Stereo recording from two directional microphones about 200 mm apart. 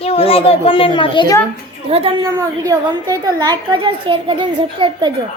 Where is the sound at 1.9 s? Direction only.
30° right (ahead or behind).